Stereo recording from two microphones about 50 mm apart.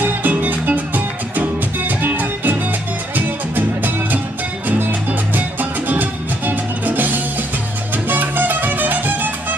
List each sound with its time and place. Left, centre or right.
0.0 s music: right
5.3 s music: right